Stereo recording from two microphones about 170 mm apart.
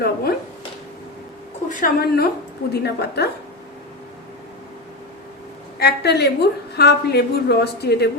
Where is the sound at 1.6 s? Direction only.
50° left (ahead or behind).